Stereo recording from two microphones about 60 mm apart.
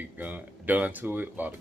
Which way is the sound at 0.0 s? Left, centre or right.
Right.